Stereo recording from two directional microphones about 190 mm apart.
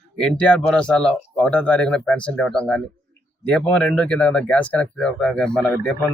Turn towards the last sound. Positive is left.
turn(degrees=5)  # may be behind; listen again after turning